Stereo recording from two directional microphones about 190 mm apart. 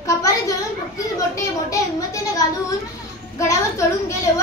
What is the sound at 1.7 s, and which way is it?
Speech, 15° left (ahead or behind).